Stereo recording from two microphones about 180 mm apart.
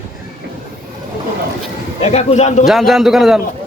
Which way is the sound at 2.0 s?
35° left (ahead or behind).